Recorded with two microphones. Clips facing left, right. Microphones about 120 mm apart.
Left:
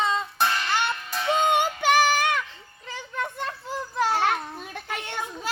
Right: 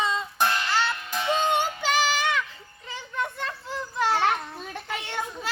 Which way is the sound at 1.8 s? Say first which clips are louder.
Left 4 dB; 55° left (ahead or behind).